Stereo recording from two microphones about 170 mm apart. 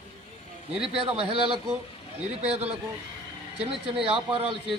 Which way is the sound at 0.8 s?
35° right (ahead or behind).